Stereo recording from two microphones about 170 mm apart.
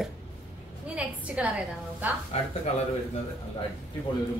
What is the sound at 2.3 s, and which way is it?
Speech, 40° left (ahead or behind).